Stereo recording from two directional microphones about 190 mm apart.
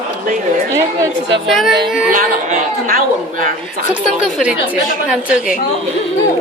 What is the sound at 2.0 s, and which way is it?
Speech, 45° right (ahead or behind).